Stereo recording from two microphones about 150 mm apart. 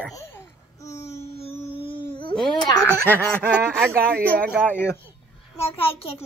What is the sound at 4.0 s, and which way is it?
Speech, 10° left (ahead or behind).